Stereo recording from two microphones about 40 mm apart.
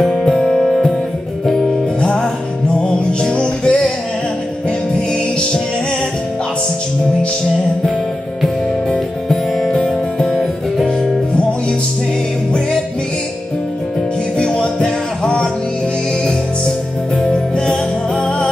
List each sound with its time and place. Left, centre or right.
0.0 s music: centre
0.6 s music: centre
2.7 s music: left
9.3 s music: centre
14.4 s music: left
17.3 s music: left